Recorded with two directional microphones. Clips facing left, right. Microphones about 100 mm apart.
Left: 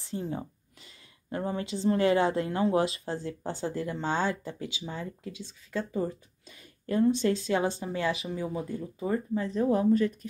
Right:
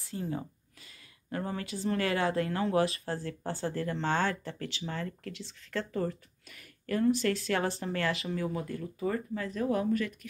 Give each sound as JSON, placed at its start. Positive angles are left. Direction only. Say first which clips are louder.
{"t": 0.0, "sound": "speech", "louder": "left 2 dB", "side_deg": 25}